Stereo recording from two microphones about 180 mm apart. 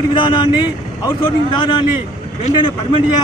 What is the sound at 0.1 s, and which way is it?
Speech, 25° left (ahead or behind).